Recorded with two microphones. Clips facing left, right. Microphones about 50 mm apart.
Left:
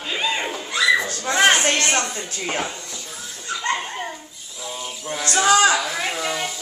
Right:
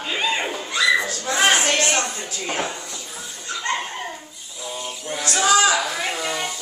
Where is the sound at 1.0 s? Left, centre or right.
Left.